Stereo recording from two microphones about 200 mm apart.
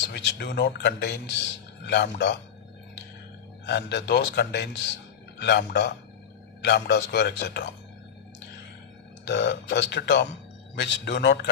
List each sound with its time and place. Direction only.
0.1 s speech: 60° left (ahead or behind)
3.7 s speech: 60° left (ahead or behind)
9.2 s speech: 60° left (ahead or behind)